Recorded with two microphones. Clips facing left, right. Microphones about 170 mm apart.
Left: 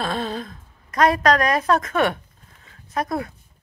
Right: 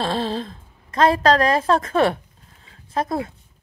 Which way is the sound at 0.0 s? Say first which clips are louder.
Right 3 dB; 30° right (ahead or behind).